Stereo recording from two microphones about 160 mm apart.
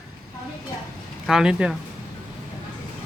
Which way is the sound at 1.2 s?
5° right (ahead or behind).